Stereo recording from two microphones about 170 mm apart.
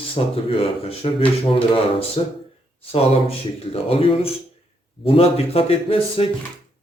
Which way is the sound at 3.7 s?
35° left (ahead or behind).